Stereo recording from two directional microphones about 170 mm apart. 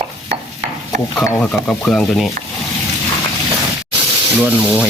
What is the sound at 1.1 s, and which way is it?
Stir, 15° left (ahead or behind).